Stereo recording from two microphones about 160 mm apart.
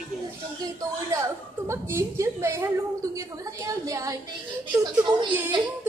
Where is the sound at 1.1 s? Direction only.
20° right (ahead or behind).